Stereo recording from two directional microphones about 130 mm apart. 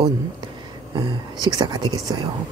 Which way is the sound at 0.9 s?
30° right (ahead or behind).